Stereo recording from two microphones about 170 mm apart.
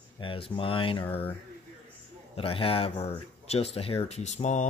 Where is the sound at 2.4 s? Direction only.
35° left (ahead or behind).